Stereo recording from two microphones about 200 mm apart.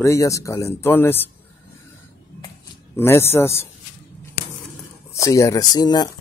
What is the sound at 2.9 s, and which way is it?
Speech, 10° left (ahead or behind).